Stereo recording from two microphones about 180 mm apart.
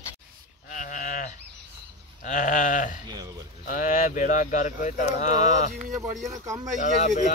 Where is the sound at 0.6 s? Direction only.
45° left (ahead or behind).